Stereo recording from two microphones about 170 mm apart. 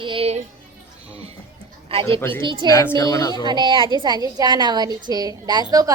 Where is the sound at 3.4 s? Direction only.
25° right (ahead or behind).